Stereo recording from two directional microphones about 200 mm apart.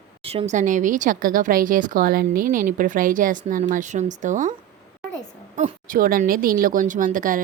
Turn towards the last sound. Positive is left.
turn(degrees=-40)  # may be behind; listen again after turning